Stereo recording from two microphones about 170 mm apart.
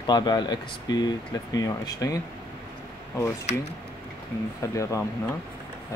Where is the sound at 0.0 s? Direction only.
25° left (ahead or behind).